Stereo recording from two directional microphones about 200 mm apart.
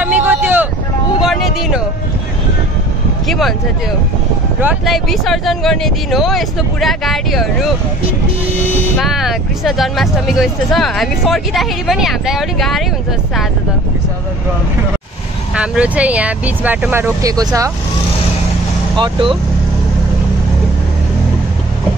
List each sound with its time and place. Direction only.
0.0 s vehicle: 10° right (ahead or behind)
1.2 s a sound: centre (ahead or behind)
3.3 s speech: centre (ahead or behind)
4.6 s speech: 5° right (ahead or behind)
8.9 s speech: centre (ahead or behind)
15.5 s speech: 5° right (ahead or behind)
18.9 s speech: 25° right (ahead or behind)